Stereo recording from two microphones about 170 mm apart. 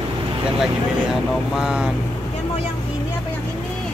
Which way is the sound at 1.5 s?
5° right (ahead or behind).